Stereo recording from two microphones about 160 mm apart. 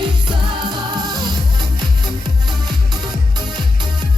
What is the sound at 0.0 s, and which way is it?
Music, 25° right (ahead or behind).